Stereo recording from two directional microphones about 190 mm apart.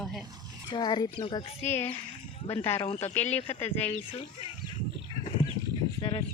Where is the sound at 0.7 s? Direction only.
25° left (ahead or behind).